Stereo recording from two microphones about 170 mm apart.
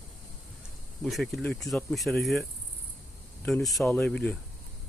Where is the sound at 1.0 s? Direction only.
Centre (ahead or behind).